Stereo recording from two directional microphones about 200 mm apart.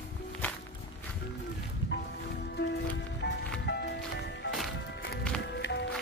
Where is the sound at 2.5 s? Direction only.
60° left (ahead or behind).